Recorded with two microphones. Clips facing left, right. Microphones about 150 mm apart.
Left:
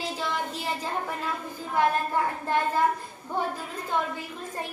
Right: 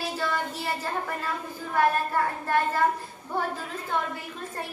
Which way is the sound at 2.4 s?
15° left (ahead or behind).